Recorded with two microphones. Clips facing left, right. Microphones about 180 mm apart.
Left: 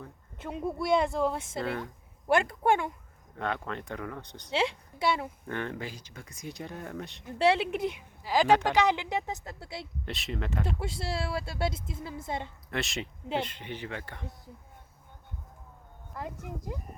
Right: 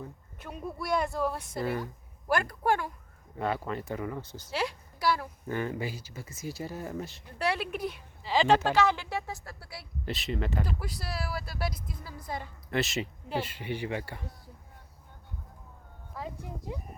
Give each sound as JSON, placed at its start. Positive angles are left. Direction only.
{"t": 0.3, "sound": "a woman's voice", "side_deg": 25}
{"t": 1.6, "sound": "speech", "side_deg": -5}
{"t": 2.2, "sound": "a woman's voice", "side_deg": 25}
{"t": 3.3, "sound": "speech", "side_deg": -5}
{"t": 4.5, "sound": "a woman's voice", "side_deg": 25}
{"t": 5.5, "sound": "speech", "side_deg": -5}
{"t": 7.3, "sound": "a woman's voice", "side_deg": 25}
{"t": 8.2, "sound": "a woman's voice", "side_deg": 10}
{"t": 10.1, "sound": "speech", "side_deg": 0}
{"t": 10.8, "sound": "a woman's voice", "side_deg": 25}
{"t": 12.7, "sound": "speech", "side_deg": 0}
{"t": 16.1, "sound": "speech", "side_deg": 0}